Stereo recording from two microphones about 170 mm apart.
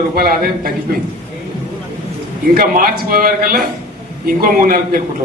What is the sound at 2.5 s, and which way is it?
A man's voice, 55° right (ahead or behind).